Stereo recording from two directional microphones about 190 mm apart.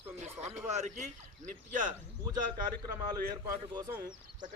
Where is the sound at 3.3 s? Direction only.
20° right (ahead or behind).